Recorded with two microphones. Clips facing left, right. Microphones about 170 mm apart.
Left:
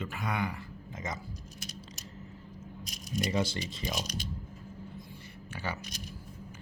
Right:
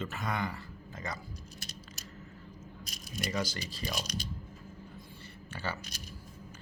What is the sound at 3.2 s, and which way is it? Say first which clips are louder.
Speech: left 4 dB; 25° left (ahead or behind).